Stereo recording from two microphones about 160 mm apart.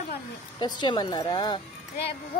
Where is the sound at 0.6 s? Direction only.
30° left (ahead or behind).